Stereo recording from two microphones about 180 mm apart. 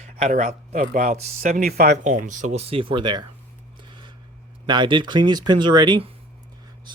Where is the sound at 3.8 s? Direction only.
25° right (ahead or behind).